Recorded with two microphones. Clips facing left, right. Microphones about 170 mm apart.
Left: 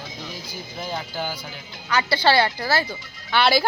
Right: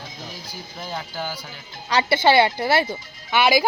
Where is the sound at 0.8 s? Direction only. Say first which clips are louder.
Left 1 dB; centre (ahead or behind).